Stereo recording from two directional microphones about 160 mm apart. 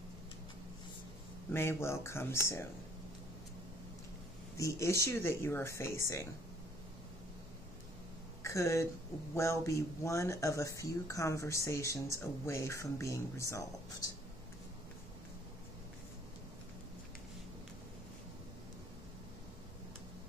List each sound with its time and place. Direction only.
1.5 s speech: 15° left (ahead or behind)
4.6 s speech: 20° left (ahead or behind)
8.4 s a sound: 15° left (ahead or behind)
9.3 s speech: 15° left (ahead or behind)